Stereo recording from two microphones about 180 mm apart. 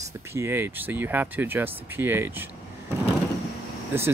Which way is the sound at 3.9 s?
10° right (ahead or behind).